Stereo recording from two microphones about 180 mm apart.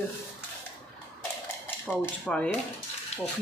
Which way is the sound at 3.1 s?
40° left (ahead or behind).